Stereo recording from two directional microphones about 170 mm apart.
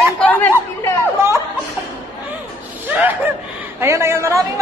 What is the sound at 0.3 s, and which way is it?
Chatter, 10° left (ahead or behind).